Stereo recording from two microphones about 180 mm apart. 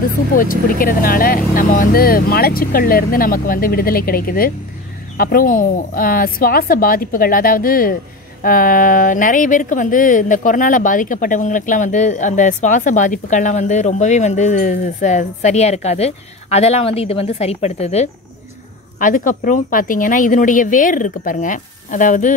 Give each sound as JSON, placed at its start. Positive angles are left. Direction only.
{"t": 0.4, "sound": "a woman's voice", "side_deg": 50}
{"t": 18.9, "sound": "a woman's voice", "side_deg": 45}